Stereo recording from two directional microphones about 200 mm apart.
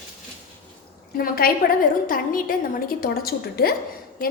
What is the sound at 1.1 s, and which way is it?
A woman's voice, 45° left (ahead or behind).